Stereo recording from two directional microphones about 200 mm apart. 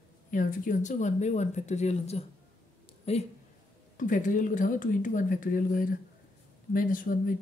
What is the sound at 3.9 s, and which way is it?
Speech, 40° left (ahead or behind).